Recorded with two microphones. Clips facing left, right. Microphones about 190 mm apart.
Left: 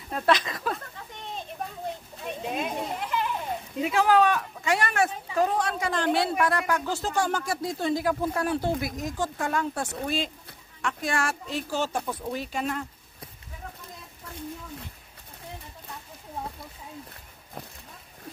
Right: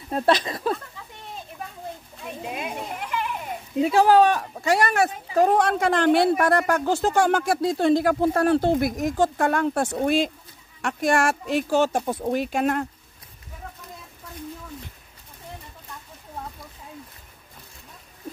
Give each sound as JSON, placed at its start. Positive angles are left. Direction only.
{"t": 0.1, "sound": "speech", "side_deg": -30}
{"t": 2.4, "sound": "children playing", "side_deg": -10}
{"t": 3.8, "sound": "speech", "side_deg": -35}
{"t": 5.5, "sound": "speech", "side_deg": -60}
{"t": 6.3, "sound": "speech", "side_deg": -45}